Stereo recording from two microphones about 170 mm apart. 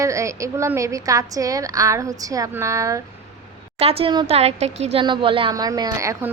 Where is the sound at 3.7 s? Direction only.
35° right (ahead or behind).